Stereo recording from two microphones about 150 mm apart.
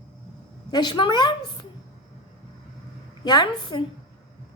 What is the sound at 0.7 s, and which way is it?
Speech, 30° left (ahead or behind).